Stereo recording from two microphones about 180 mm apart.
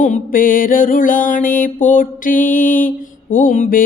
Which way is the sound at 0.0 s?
45° left (ahead or behind).